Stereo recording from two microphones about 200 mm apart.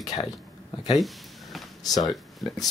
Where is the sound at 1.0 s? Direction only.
Centre (ahead or behind).